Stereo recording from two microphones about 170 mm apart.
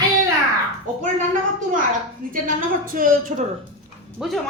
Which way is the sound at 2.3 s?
55° right (ahead or behind).